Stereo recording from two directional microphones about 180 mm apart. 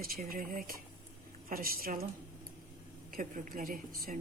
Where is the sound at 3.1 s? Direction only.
50° right (ahead or behind).